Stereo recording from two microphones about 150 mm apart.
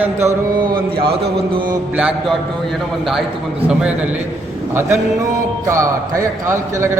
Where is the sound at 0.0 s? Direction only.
15° right (ahead or behind).